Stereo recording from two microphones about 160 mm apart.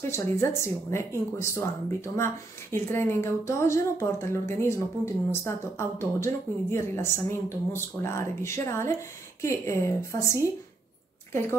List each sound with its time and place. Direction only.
0.1 s a woman's voice: 15° left (ahead or behind)